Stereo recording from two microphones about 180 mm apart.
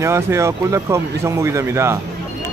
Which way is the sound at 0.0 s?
15° right (ahead or behind).